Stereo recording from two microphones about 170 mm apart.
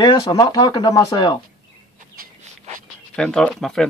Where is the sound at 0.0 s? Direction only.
25° left (ahead or behind).